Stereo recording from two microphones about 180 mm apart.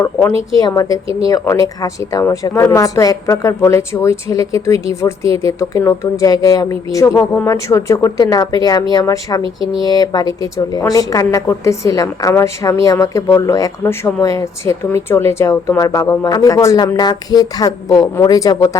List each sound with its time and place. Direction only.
0.0 s speech: 15° left (ahead or behind)